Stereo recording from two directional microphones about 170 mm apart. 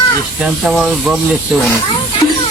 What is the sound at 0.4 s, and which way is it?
Speech, centre (ahead or behind).